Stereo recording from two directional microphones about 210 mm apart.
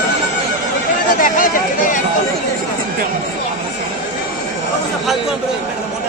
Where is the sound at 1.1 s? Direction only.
40° left (ahead or behind).